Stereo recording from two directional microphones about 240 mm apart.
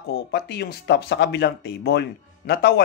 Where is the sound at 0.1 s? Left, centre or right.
Left.